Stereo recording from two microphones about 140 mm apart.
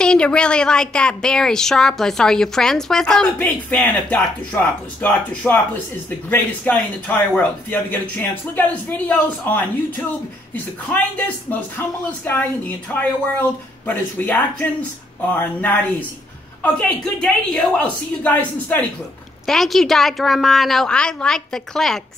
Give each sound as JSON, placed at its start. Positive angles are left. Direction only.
{"t": 0.0, "sound": "a woman's voice", "side_deg": 5}